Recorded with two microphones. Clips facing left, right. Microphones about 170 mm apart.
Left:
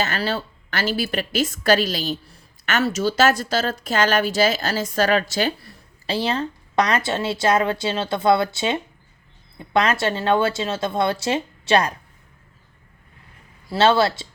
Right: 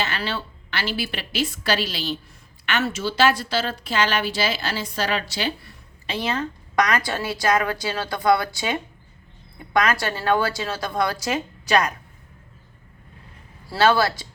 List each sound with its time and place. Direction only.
0.0 s a woman's voice: 40° left (ahead or behind)
13.7 s a woman's voice: 25° left (ahead or behind)